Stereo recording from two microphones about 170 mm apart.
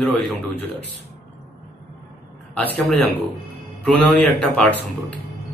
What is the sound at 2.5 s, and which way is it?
A man's voice, 5° left (ahead or behind).